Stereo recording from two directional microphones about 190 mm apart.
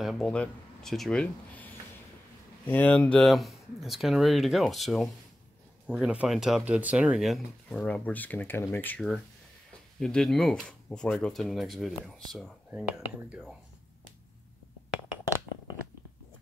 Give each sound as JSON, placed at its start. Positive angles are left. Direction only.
{"t": 0.0, "sound": "speech", "side_deg": 0}